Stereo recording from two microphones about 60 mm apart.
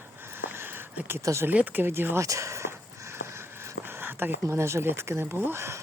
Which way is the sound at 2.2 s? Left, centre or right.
Right.